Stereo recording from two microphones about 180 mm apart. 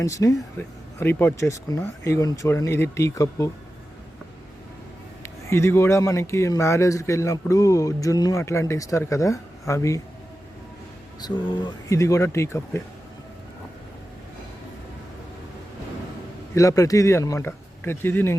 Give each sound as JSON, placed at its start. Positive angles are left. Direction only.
{"t": 0.0, "sound": "a man's voice", "side_deg": 20}
{"t": 5.2, "sound": "a man's voice", "side_deg": 15}
{"t": 11.2, "sound": "a man's voice", "side_deg": 25}
{"t": 16.6, "sound": "a man's voice", "side_deg": 20}